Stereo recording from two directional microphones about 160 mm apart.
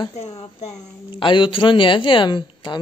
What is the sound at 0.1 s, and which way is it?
A woman's voice, 40° left (ahead or behind).